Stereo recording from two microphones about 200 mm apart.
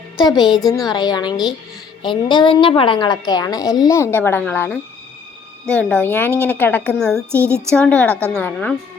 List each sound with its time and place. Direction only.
0.5 s a woman's voice: 20° left (ahead or behind)